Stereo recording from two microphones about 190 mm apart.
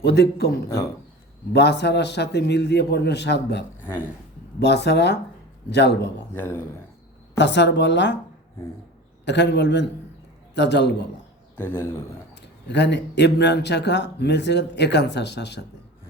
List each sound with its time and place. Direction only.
0.0 s speech: 60° left (ahead or behind)
1.5 s speech: 60° left (ahead or behind)
4.6 s speech: 60° left (ahead or behind)
6.3 s a man's voice: 10° left (ahead or behind)
7.3 s a woman's voice: 65° left (ahead or behind)
9.2 s speech: 65° left (ahead or behind)
11.5 s a man's voice: 10° left (ahead or behind)
12.3 s speech: 65° left (ahead or behind)